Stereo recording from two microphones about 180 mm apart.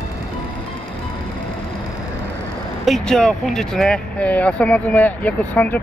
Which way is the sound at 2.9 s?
5° left (ahead or behind).